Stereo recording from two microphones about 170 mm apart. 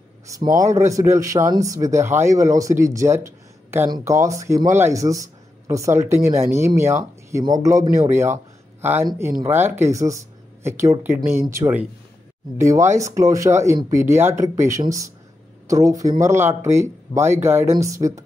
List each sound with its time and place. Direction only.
0.6 s speech: 15° right (ahead or behind)